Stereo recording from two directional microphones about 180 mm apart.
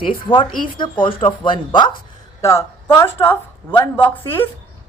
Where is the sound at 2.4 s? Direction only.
15° left (ahead or behind).